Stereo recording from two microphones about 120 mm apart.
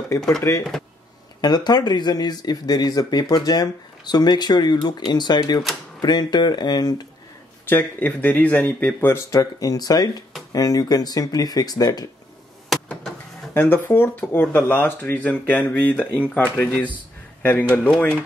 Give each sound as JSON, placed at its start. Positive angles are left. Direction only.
{"t": 0.4, "sound": "speech", "side_deg": 25}
{"t": 1.4, "sound": "speech", "side_deg": 35}
{"t": 7.6, "sound": "speech", "side_deg": 15}
{"t": 12.6, "sound": "a sound", "side_deg": 0}
{"t": 13.5, "sound": "speech", "side_deg": 20}